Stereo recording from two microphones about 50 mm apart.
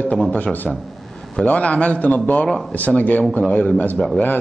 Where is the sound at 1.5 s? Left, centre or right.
Left.